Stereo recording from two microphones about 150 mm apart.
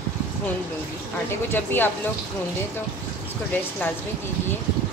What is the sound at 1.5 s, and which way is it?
Speech, 15° left (ahead or behind).